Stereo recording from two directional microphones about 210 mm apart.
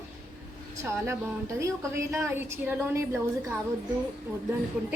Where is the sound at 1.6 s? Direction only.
15° right (ahead or behind).